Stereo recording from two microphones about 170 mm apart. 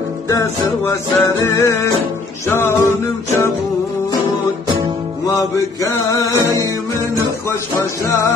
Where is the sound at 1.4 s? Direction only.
20° left (ahead or behind).